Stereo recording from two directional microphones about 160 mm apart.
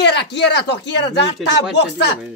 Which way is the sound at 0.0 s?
90° left.